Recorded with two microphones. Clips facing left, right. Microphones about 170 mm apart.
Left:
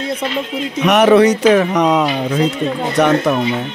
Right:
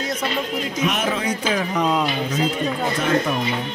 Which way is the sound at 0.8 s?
75° left (ahead or behind).